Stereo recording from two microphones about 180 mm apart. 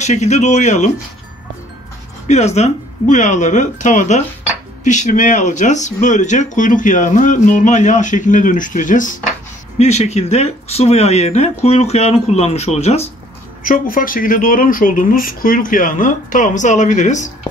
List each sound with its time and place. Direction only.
0.0 s speech: 40° left (ahead or behind)
2.2 s speech: 40° left (ahead or behind)
13.7 s speech: 50° left (ahead or behind)